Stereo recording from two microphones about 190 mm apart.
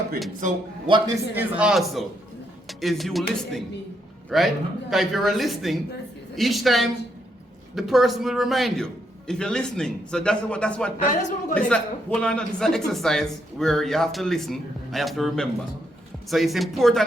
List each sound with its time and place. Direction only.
0.9 s a man's voice: 20° right (ahead or behind)
1.5 s speech: 5° right (ahead or behind)
10.9 s speech: 40° left (ahead or behind)
12.2 s speech: 5° left (ahead or behind)